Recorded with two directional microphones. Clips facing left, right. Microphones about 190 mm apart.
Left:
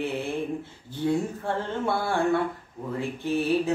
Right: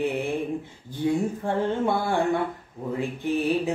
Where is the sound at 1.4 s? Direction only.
15° right (ahead or behind).